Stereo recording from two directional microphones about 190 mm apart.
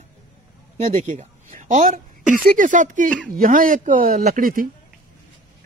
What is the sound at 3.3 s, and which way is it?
Speech, 45° right (ahead or behind).